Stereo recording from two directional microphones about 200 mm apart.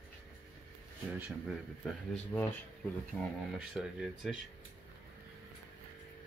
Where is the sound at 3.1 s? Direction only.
10° left (ahead or behind).